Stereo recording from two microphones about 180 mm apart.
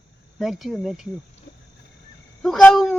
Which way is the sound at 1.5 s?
65° left (ahead or behind).